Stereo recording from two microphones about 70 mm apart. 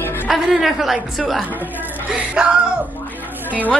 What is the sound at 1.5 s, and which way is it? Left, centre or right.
Speech, right.